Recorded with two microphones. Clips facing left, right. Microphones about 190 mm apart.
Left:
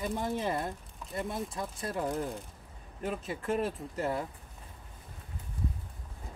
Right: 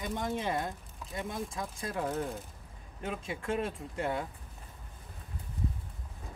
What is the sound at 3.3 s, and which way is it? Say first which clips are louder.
Speech: left 2 dB; 35° left (ahead or behind).